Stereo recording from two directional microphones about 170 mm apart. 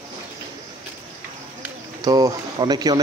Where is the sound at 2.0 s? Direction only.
20° right (ahead or behind).